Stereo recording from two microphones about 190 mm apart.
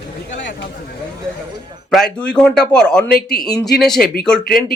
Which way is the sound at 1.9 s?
5° left (ahead or behind).